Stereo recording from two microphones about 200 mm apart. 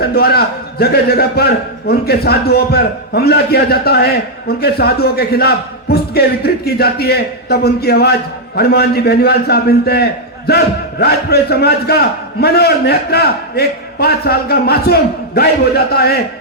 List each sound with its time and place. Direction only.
0.0 s a man's voice: 50° left (ahead or behind)